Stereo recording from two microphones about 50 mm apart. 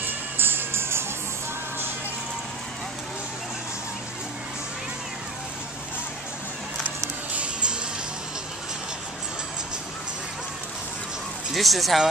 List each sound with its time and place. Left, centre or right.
0.0 s music: right
11.5 s speech: centre